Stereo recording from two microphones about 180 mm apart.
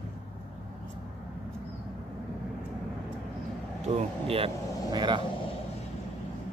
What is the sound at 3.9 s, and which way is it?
Speech, 35° right (ahead or behind).